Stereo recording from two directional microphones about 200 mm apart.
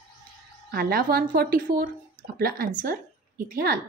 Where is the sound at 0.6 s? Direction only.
50° right (ahead or behind).